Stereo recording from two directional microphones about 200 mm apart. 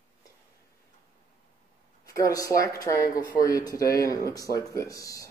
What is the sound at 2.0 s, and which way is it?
Speech, 15° left (ahead or behind).